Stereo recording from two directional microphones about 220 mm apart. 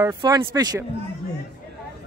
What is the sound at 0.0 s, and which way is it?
Speech, 15° right (ahead or behind).